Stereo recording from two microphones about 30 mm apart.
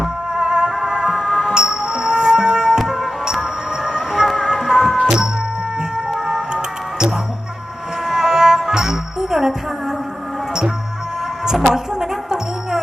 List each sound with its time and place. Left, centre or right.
0.0 s music: right
1.3 s music: centre
1.5 s music: right
6.2 s music: right
8.0 s music: centre
11.4 s music: centre